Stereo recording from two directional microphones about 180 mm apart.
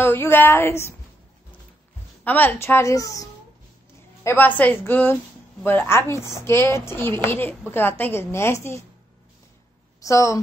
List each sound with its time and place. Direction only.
0.0 s speech: 10° left (ahead or behind)
2.2 s speech: 10° left (ahead or behind)
10.0 s speech: 15° left (ahead or behind)